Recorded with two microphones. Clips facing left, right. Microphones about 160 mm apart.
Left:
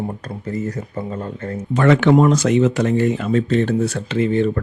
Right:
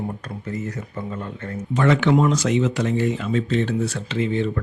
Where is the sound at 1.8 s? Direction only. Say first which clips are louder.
Left 4 dB; 55° left (ahead or behind).